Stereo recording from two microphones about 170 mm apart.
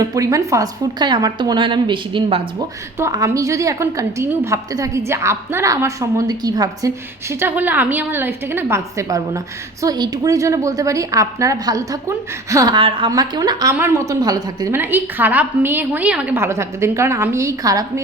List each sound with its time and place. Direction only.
0.0 s a woman's voice: 20° right (ahead or behind)
3.0 s a woman's voice: 20° right (ahead or behind)